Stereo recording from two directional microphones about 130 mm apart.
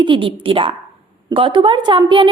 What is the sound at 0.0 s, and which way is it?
A woman's voice, 40° right (ahead or behind).